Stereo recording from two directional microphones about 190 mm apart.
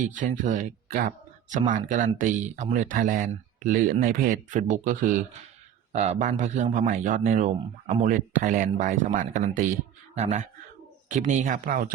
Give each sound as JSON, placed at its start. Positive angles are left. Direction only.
{"t": 0.0, "sound": "a man's voice", "side_deg": -45}